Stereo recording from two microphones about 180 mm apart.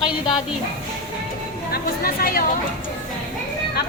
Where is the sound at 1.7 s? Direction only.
55° left (ahead or behind).